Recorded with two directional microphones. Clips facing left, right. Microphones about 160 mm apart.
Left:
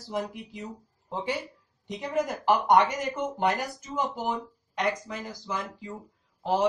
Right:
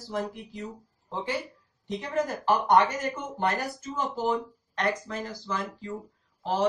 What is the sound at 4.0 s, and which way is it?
Speech, 15° left (ahead or behind).